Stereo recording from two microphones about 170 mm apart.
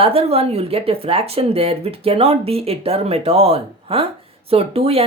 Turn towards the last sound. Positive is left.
turn(degrees=-35)  # may be behind; listen again after turning